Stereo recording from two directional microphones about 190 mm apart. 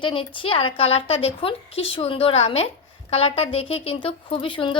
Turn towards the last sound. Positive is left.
turn(degrees=25)  # may be behind; listen again after turning